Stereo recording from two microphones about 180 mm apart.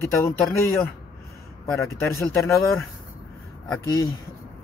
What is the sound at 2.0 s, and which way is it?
Speech, 15° left (ahead or behind).